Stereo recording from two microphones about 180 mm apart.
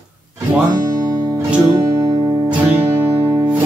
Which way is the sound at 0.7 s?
20° right (ahead or behind).